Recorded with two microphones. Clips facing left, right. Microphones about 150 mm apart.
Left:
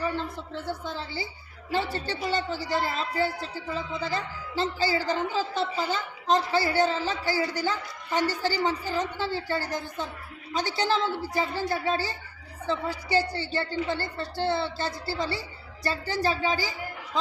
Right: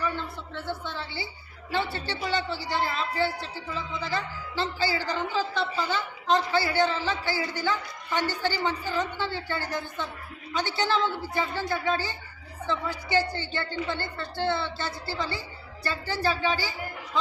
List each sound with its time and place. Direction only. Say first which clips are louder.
0.6 s a woman's voice: even; 40° left (ahead or behind)